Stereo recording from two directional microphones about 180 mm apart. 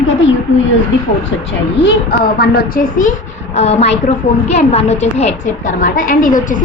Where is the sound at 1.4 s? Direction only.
70° left (ahead or behind).